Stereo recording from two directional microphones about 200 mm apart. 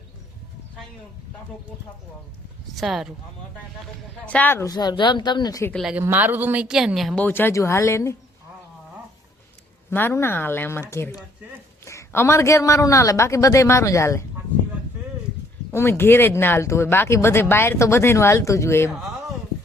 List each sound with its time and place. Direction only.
2.8 s speech: centre (ahead or behind)
4.3 s a woman's voice: 10° left (ahead or behind)
5.7 s speech: 5° right (ahead or behind); by 8.1 s 15° left (ahead or behind)
9.9 s speech: 10° left (ahead or behind)
15.7 s speech: 10° left (ahead or behind)